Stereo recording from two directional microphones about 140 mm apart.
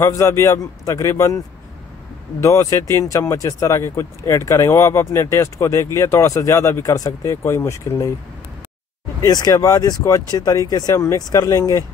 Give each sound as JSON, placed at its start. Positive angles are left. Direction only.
{"t": 0.0, "sound": "speech", "side_deg": 20}
{"t": 2.4, "sound": "speech", "side_deg": 20}
{"t": 9.2, "sound": "speech", "side_deg": 30}